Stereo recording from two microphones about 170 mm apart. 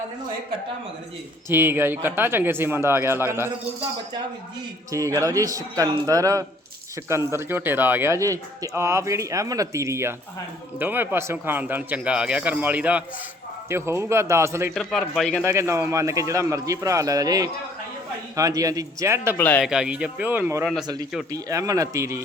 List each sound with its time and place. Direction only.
1.5 s speech: 15° right (ahead or behind)
4.9 s a man's voice: 20° right (ahead or behind)
14.8 s speech: centre (ahead or behind)
15.4 s a man's voice: 15° right (ahead or behind)
19.4 s speech: 10° left (ahead or behind)
19.6 s a man's voice: 5° right (ahead or behind)